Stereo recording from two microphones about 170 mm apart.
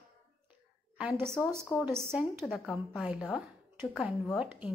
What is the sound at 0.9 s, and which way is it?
Speech, 10° right (ahead or behind).